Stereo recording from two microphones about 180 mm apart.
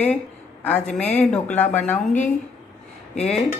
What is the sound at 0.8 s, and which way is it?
Speech, 40° left (ahead or behind).